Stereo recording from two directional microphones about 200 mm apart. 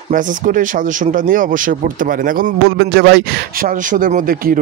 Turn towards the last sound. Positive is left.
turn(degrees=-40)  # may be behind; listen again after turning